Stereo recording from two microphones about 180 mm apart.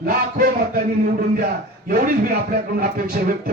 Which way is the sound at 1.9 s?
50° right (ahead or behind).